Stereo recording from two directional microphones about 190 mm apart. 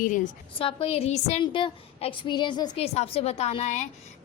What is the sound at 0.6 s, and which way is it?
A woman's voice, 30° left (ahead or behind).